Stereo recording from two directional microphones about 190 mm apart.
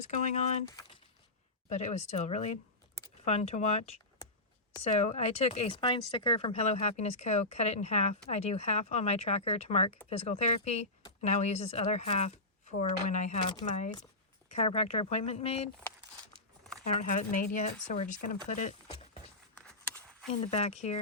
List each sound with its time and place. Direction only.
0.0 s speech: 40° left (ahead or behind)
0.7 s a sound: 25° left (ahead or behind)
1.7 s speech: 35° left (ahead or behind)
13.4 s speech: 25° left (ahead or behind)
14.5 s speech: 35° left (ahead or behind)
16.8 s speech: 35° left (ahead or behind)
18.4 s a sound: 40° left (ahead or behind)
19.5 s a sound: 5° left (ahead or behind)
20.4 s speech: 35° left (ahead or behind)